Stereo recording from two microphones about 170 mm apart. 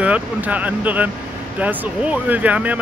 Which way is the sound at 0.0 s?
10° right (ahead or behind).